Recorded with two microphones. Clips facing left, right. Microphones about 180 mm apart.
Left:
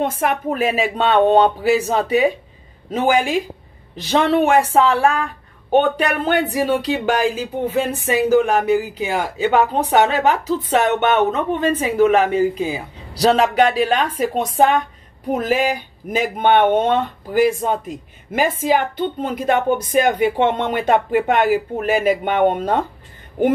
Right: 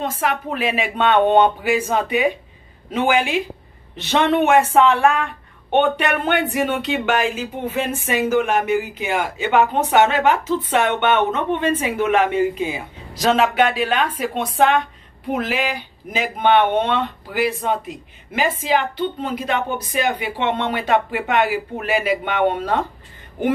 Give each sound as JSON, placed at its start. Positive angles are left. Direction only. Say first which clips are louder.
{"t": 0.0, "sound": "speech", "louder": "left 3 dB", "side_deg": 55}